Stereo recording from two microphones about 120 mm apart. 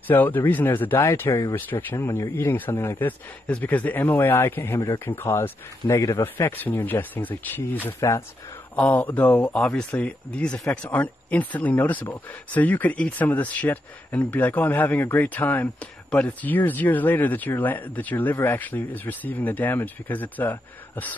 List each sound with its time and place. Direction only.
0.1 s speech: 15° left (ahead or behind)